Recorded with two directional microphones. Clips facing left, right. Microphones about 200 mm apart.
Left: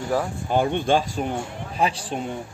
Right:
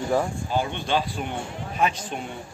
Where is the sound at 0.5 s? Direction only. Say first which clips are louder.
Left 5 dB; 55° left (ahead or behind).